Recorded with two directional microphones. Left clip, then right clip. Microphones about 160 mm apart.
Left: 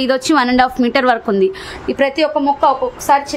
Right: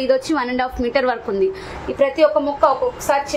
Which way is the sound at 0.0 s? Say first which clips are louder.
Left 4 dB; 60° left (ahead or behind).